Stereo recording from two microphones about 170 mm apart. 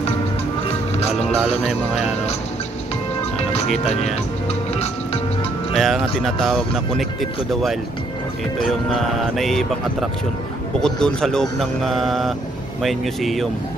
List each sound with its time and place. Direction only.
1.2 s speech: centre (ahead or behind)
3.8 s speech: 40° left (ahead or behind)
5.8 s speech: centre (ahead or behind)